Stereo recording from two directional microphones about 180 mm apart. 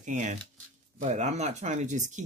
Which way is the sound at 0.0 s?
45° right (ahead or behind).